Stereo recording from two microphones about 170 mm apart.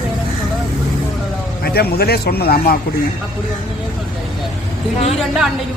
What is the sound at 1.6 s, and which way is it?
Speech, 65° left (ahead or behind).